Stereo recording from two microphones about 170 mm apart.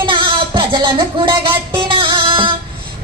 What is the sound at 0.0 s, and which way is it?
Music, 30° right (ahead or behind).